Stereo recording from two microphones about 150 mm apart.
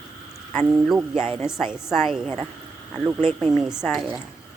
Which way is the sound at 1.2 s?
15° left (ahead or behind).